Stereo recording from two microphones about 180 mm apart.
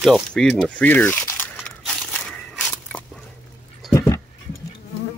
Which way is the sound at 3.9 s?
15° left (ahead or behind).